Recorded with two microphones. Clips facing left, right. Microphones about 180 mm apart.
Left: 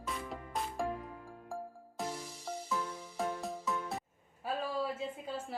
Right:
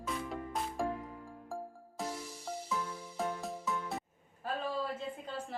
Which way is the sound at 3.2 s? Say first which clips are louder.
Even; centre (ahead or behind).